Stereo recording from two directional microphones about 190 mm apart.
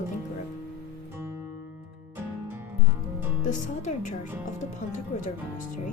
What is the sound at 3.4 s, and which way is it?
Speech, 40° left (ahead or behind).